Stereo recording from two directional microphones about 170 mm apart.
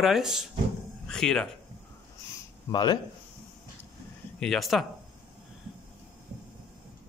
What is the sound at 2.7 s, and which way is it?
Speech, 25° left (ahead or behind).